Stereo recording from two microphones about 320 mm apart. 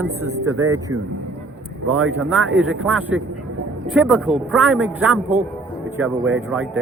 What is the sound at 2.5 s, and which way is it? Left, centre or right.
A man's voice, centre.